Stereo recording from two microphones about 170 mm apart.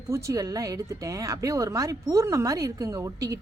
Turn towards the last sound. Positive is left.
turn(degrees=-20)  # may be behind; listen again after turning